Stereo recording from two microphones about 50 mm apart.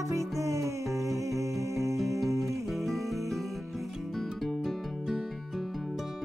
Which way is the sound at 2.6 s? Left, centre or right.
Centre.